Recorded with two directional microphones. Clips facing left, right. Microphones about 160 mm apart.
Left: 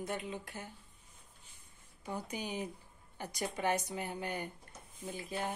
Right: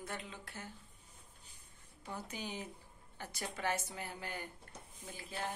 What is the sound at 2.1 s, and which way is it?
Speech, 15° left (ahead or behind).